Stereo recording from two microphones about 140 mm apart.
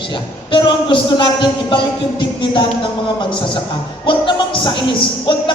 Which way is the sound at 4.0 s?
35° left (ahead or behind).